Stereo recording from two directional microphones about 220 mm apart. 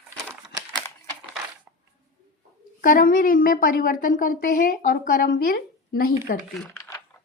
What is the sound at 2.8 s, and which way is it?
A woman's voice, 40° left (ahead or behind).